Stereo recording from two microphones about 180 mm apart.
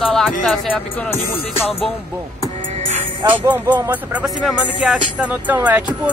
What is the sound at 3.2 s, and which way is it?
Speech, 25° right (ahead or behind).